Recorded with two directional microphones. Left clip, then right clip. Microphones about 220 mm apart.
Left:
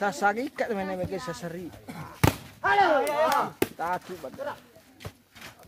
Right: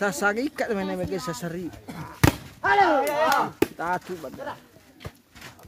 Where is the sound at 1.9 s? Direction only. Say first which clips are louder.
Right 3 dB; 5° right (ahead or behind).